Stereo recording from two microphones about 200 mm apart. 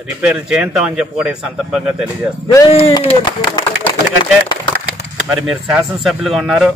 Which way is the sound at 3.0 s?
30° left (ahead or behind).